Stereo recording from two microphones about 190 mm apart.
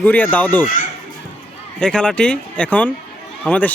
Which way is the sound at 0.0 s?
5° left (ahead or behind).